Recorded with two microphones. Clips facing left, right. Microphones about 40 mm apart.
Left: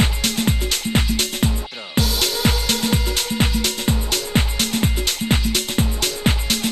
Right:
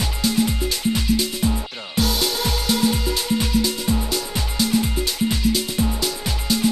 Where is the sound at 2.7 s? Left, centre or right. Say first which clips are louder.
Right 1 dB; left.